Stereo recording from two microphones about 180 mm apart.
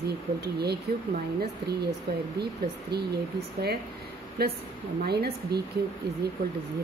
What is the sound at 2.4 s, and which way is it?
Speech, 65° right (ahead or behind).